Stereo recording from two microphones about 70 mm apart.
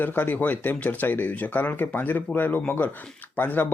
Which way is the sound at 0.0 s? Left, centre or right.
Left.